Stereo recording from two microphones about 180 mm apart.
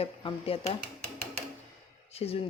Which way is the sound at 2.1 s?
35° left (ahead or behind).